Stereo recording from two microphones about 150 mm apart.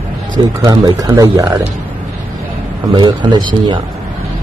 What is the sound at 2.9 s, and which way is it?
Speech, 30° right (ahead or behind).